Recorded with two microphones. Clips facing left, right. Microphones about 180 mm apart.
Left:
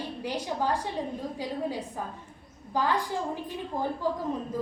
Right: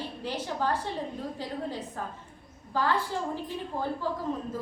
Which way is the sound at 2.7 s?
15° left (ahead or behind).